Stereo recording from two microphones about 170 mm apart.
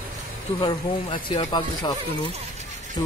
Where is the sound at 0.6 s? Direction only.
30° left (ahead or behind).